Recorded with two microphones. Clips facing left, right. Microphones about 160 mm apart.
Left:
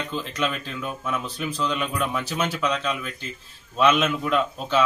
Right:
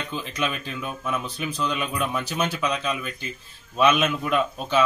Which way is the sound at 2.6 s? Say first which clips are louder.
Left 1 dB; 10° right (ahead or behind).